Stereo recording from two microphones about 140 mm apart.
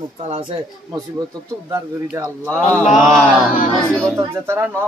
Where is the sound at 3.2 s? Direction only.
5° right (ahead or behind).